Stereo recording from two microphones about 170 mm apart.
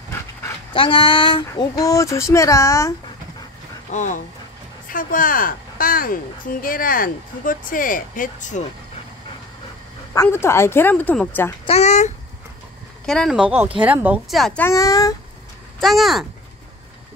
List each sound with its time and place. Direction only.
0.7 s speech: 30° left (ahead or behind)
3.9 s speech: 45° left (ahead or behind)
10.1 s a woman's voice: 15° left (ahead or behind)
11.6 s a child's voice: 40° left (ahead or behind)
13.0 s speech: centre (ahead or behind)
14.3 s speech: 5° left (ahead or behind)
14.7 s speech: 20° left (ahead or behind)
15.8 s speech: centre (ahead or behind)